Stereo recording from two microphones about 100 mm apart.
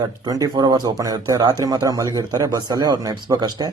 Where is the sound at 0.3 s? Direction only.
40° right (ahead or behind).